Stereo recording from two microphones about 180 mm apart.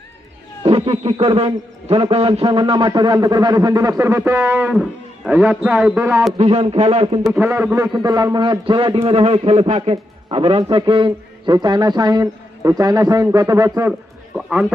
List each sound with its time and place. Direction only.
0.6 s a man's voice: 30° right (ahead or behind); by 6.2 s 10° right (ahead or behind)
6.3 s speech: 35° right (ahead or behind)
7.3 s a man's voice: 10° right (ahead or behind)
8.0 s a man's voice: 20° right (ahead or behind)
14.3 s a man's voice: 5° right (ahead or behind)